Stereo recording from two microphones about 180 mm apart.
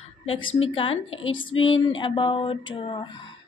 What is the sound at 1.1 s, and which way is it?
Speech, 90° left.